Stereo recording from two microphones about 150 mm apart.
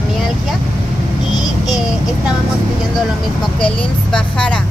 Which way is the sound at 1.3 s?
25° left (ahead or behind).